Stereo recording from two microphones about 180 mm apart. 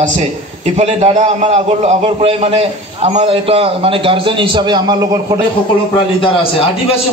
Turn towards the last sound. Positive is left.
turn(degrees=-25)  # may be behind; listen again after turning